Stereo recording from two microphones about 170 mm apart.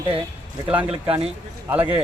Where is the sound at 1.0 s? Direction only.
30° right (ahead or behind).